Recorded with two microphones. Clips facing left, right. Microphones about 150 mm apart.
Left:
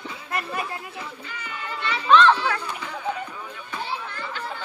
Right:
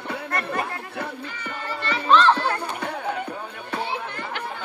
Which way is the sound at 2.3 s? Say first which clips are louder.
Right 1 dB; 60° right (ahead or behind).